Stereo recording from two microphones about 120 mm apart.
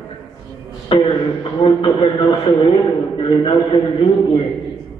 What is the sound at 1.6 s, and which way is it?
A man's voice, 45° left (ahead or behind).